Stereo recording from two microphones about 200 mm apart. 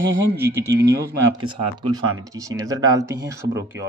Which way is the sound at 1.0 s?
65° right (ahead or behind).